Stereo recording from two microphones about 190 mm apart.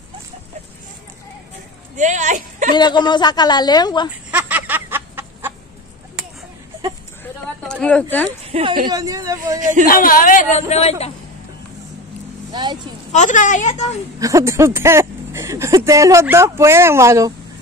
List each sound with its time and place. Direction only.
2.0 s speech: 40° right (ahead or behind)
2.7 s a woman's voice: 25° left (ahead or behind)
4.3 s a sound: 10° right (ahead or behind)
7.6 s speech: 5° left (ahead or behind)
8.5 s speech: 30° right (ahead or behind)
8.8 s speech: 20° right (ahead or behind)
9.6 s speech: 40° right (ahead or behind)
9.8 s speech: 45° left (ahead or behind)
13.1 s a woman's voice: 40° left (ahead or behind)
14.2 s speech: 15° right (ahead or behind)